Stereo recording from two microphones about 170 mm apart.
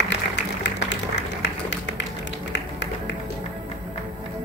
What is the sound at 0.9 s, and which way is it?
Tap, 90° left.